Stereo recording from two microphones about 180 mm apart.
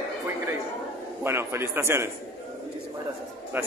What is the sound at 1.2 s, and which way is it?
Speech, 15° right (ahead or behind).